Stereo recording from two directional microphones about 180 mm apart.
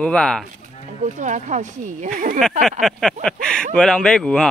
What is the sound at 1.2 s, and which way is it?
Speech, 45° right (ahead or behind).